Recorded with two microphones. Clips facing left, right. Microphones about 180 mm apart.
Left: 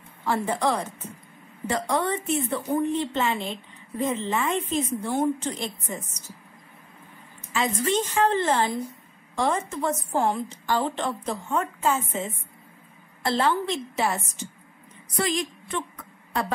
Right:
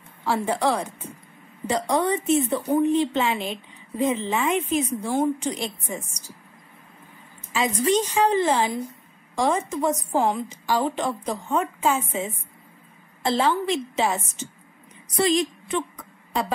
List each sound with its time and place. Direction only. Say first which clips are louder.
0.2 s a woman's voice: right 2 dB; 10° right (ahead or behind)
7.5 s a woman's voice: right 3 dB; 15° right (ahead or behind)
16.0 s a sound: right 2 dB; 15° right (ahead or behind)